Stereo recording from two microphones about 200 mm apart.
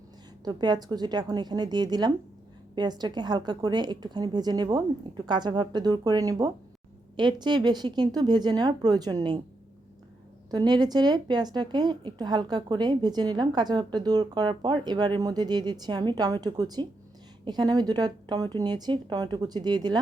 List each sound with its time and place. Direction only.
0.4 s a woman's voice: 20° right (ahead or behind)
10.5 s a woman's voice: 20° right (ahead or behind)